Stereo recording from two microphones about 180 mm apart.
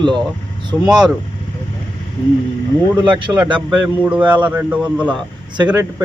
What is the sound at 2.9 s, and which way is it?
Speech, 25° right (ahead or behind).